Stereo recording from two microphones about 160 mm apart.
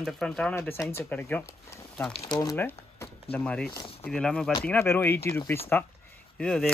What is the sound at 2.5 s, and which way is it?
Speech, 10° left (ahead or behind).